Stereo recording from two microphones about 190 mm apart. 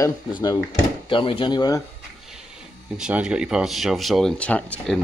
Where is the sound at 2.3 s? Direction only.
5° right (ahead or behind).